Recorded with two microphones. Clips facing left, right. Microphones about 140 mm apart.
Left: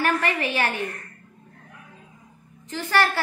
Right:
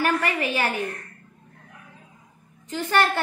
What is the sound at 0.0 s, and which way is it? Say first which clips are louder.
Speech: even; 10° right (ahead or behind).